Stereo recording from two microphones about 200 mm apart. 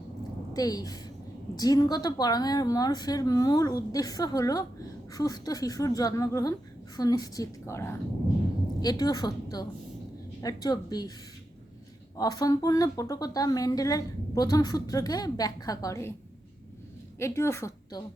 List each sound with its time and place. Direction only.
0.5 s a woman's voice: 20° left (ahead or behind)
12.1 s speech: 20° left (ahead or behind)
17.2 s a woman's voice: 15° left (ahead or behind)